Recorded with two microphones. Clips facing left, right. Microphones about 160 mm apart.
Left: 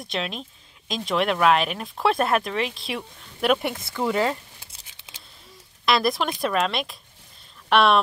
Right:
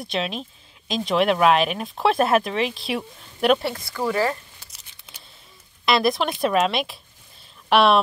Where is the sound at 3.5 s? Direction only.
20° left (ahead or behind).